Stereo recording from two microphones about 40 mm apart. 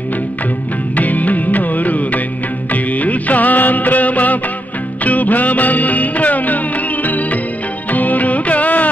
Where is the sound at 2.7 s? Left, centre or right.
Left.